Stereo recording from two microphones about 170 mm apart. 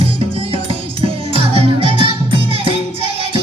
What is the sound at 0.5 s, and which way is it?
Music, 35° right (ahead or behind).